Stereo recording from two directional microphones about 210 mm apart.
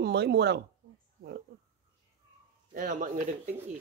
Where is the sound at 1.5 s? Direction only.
50° right (ahead or behind).